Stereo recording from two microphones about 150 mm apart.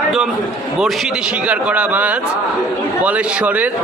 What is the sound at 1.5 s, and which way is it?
A man's voice, 10° right (ahead or behind).